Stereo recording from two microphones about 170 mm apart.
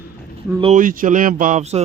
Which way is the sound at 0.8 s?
50° right (ahead or behind).